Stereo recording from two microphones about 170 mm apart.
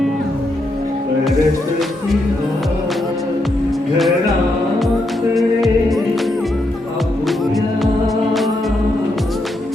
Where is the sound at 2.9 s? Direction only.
Centre (ahead or behind).